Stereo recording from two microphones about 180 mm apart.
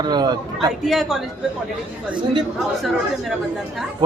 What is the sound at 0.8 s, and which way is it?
Speech, centre (ahead or behind).